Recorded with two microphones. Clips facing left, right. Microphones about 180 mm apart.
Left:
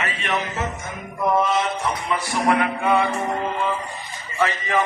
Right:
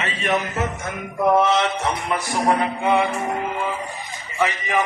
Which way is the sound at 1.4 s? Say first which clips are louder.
Right 2 dB; 75° right (ahead or behind).